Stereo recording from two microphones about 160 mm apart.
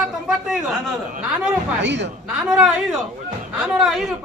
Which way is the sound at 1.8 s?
90° right.